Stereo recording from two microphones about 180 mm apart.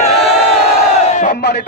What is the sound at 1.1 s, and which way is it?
Battle cry, 45° left (ahead or behind).